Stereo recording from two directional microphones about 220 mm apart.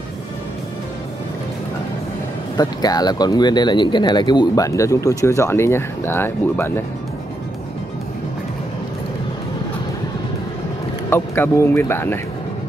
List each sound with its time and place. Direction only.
2.5 s speech: 15° left (ahead or behind)
11.1 s speech: 10° left (ahead or behind)